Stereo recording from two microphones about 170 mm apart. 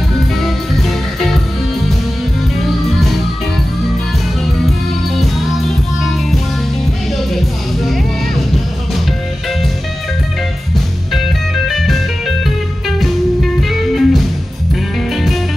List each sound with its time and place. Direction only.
0.4 s music: centre (ahead or behind)
11.5 s music: centre (ahead or behind)
13.0 s music: centre (ahead or behind)